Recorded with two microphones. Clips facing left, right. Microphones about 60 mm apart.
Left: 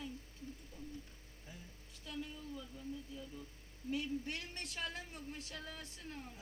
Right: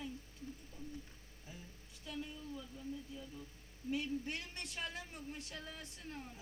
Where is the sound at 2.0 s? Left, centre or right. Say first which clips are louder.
Even; centre.